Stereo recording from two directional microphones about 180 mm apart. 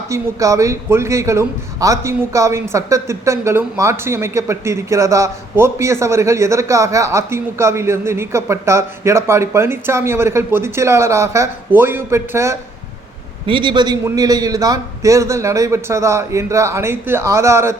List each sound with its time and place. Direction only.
0.1 s a man's voice: 20° right (ahead or behind)
13.5 s a man's voice: 25° right (ahead or behind)